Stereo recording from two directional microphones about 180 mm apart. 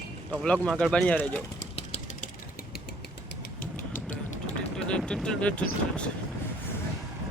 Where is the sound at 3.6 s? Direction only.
45° left (ahead or behind).